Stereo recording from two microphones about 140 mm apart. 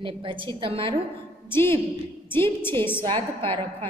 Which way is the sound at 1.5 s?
15° left (ahead or behind).